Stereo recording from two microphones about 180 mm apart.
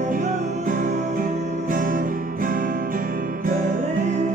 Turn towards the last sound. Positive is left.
turn(degrees=-45)  # may be behind; listen again after turning